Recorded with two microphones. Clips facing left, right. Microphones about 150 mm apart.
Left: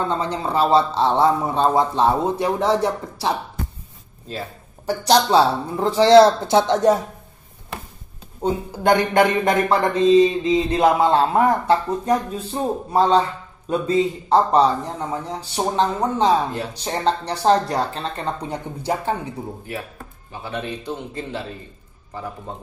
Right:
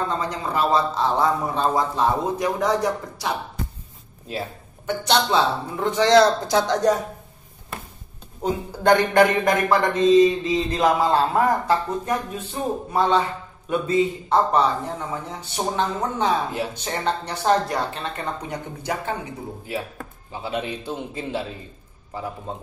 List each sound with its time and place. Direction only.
0.2 s speech: 30° left (ahead or behind)
4.3 s a man's voice: 10° right (ahead or behind)
4.8 s speech: 35° left (ahead or behind)
8.4 s speech: 20° left (ahead or behind)
20.4 s a man's voice: 10° right (ahead or behind)